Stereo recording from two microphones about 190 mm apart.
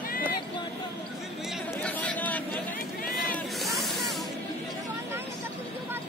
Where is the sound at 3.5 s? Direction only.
Centre (ahead or behind).